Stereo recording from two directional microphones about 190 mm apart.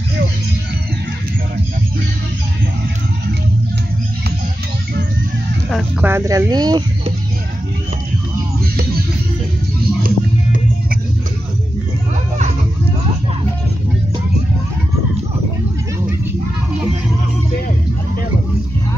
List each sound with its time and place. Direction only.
5.7 s a sound: centre (ahead or behind)
6.0 s speech: 15° right (ahead or behind)
10.0 s music: 50° right (ahead or behind)